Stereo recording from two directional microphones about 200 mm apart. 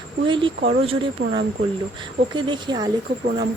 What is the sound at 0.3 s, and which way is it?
Speech, 25° right (ahead or behind).